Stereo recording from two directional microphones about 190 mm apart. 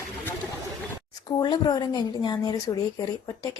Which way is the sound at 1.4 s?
20° left (ahead or behind).